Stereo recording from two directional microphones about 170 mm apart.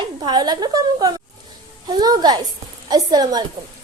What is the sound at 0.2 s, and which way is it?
A woman's voice, 25° right (ahead or behind).